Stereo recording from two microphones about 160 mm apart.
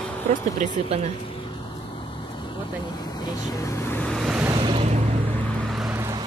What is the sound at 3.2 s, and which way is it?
Speech, 20° left (ahead or behind).